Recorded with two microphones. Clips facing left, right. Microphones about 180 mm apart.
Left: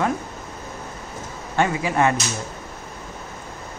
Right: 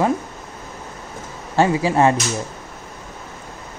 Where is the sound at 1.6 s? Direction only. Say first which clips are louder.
Right 4 dB; 30° right (ahead or behind).